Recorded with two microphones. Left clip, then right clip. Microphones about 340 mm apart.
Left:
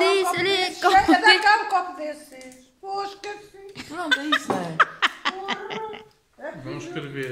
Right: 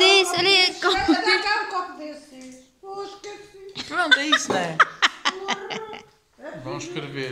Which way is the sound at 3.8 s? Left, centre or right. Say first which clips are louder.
Right 6 dB; centre.